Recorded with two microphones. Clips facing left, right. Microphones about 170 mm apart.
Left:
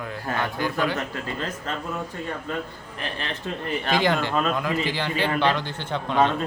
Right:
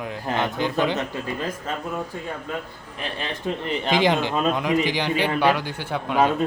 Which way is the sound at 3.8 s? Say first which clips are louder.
Right 2 dB; 20° right (ahead or behind).